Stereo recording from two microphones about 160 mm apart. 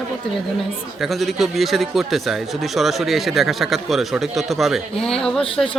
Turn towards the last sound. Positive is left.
turn(degrees=35)  # may be behind; listen again after turning